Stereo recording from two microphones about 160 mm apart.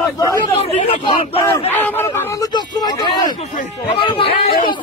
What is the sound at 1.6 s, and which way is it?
Chatter, 15° left (ahead or behind).